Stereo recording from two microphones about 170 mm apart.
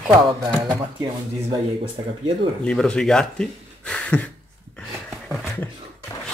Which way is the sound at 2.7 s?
5° left (ahead or behind).